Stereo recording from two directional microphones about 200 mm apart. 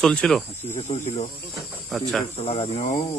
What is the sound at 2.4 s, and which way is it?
Speech, 30° left (ahead or behind).